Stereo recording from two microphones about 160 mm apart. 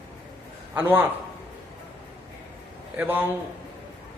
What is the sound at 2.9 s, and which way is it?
Speech, 10° right (ahead or behind).